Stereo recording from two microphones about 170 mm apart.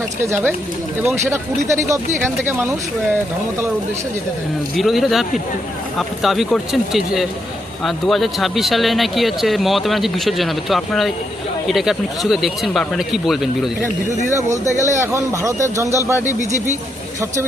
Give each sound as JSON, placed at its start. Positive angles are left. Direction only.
{"t": 0.2, "sound": "speech", "side_deg": -15}
{"t": 4.8, "sound": "speech", "side_deg": 0}
{"t": 14.8, "sound": "speech", "side_deg": -20}
{"t": 16.2, "sound": "speech", "side_deg": -45}